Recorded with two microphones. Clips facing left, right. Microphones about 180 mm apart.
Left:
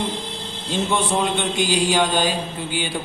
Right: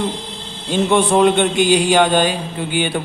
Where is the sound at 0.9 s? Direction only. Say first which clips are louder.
Right 10 dB; 65° right (ahead or behind).